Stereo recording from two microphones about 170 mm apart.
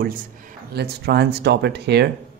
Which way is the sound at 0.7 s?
70° right (ahead or behind).